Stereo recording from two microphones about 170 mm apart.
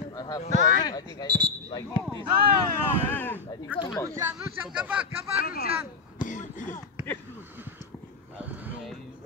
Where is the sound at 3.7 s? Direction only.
10° right (ahead or behind).